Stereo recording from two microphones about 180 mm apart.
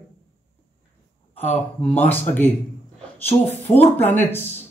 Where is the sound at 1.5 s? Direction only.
35° left (ahead or behind).